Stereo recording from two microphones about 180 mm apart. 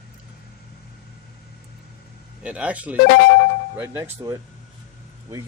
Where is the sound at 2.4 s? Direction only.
5° right (ahead or behind).